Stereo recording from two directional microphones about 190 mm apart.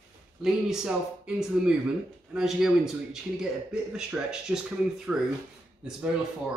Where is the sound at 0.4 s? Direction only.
5° right (ahead or behind).